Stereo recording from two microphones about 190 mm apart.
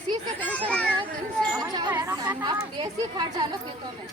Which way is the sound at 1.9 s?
15° right (ahead or behind).